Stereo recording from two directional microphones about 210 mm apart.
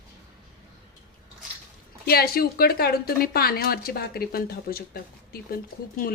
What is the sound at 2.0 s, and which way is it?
Speech, 45° left (ahead or behind).